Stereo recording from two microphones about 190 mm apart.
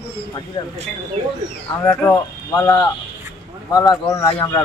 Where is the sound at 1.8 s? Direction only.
10° left (ahead or behind).